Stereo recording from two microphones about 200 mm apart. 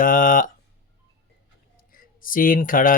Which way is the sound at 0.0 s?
40° left (ahead or behind).